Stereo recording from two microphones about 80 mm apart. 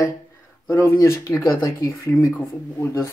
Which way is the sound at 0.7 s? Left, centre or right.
Left.